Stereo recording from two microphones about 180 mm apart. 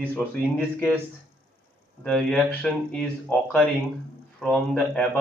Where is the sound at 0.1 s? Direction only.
10° left (ahead or behind).